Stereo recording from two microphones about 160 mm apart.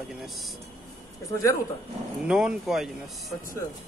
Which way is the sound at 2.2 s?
5° right (ahead or behind).